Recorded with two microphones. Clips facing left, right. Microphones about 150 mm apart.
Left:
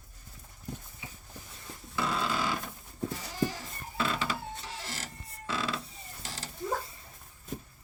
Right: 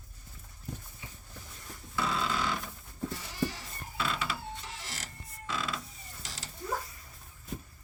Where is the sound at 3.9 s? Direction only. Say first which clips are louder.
Left 2 dB; 40° left (ahead or behind).